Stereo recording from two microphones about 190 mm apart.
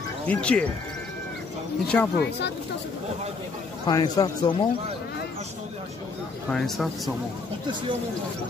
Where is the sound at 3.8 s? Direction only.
20° left (ahead or behind).